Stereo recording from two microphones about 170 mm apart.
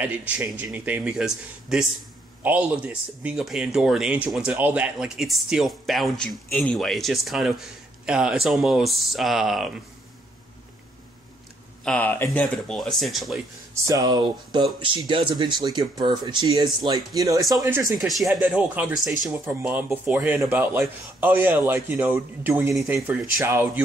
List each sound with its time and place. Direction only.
0.0 s speech: 10° right (ahead or behind)
11.8 s speech: 10° left (ahead or behind)
13.8 s speech: 20° right (ahead or behind)
18.0 s a man's voice: centre (ahead or behind)